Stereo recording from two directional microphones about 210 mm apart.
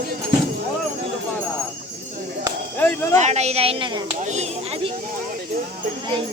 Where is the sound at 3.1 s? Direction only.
30° right (ahead or behind).